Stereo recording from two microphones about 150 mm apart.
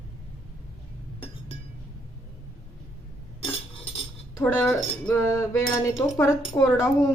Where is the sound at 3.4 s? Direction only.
40° left (ahead or behind).